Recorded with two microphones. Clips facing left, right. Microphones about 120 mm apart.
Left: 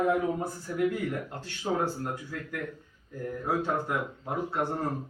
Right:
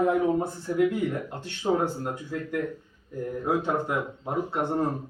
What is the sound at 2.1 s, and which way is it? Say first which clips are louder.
Speech: right 6 dB; 20° right (ahead or behind).